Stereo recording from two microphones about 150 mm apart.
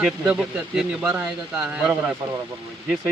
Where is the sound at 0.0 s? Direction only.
5° right (ahead or behind).